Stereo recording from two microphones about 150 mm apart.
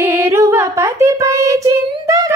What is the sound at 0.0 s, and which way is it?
Child singing, 15° right (ahead or behind).